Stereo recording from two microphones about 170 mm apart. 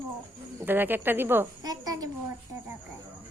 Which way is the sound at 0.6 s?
10° right (ahead or behind).